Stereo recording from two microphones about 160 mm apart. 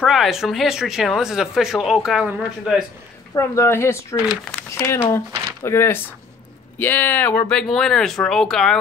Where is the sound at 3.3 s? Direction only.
15° left (ahead or behind).